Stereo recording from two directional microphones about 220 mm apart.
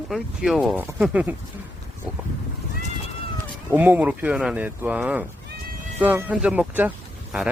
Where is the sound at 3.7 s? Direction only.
10° right (ahead or behind).